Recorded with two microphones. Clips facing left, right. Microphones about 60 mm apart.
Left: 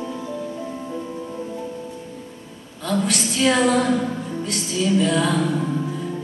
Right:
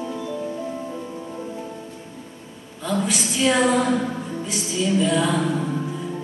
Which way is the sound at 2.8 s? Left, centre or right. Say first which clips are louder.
Left 1 dB; centre.